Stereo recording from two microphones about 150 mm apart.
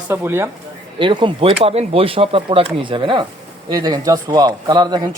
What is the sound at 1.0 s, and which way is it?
Speech, 35° right (ahead or behind).